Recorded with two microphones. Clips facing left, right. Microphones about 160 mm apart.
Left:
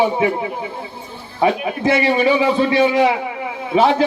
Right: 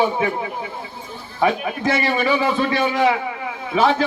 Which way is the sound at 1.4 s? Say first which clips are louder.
Left 3 dB; 30° left (ahead or behind).